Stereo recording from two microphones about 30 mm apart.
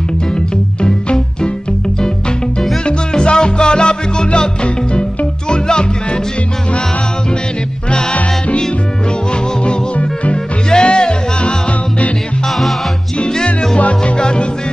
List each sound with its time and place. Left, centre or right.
2.8 s music: left
5.5 s music: left
10.3 s music: left
13.3 s music: left
13.7 s music: left
14.1 s music: left